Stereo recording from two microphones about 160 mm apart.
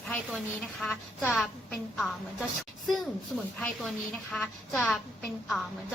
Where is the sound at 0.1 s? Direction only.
Centre (ahead or behind).